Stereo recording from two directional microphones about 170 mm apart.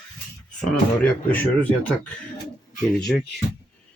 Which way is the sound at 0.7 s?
10° left (ahead or behind).